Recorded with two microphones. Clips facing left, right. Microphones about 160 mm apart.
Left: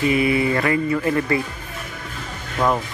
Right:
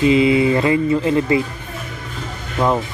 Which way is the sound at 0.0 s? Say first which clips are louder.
Right 5 dB; 20° right (ahead or behind).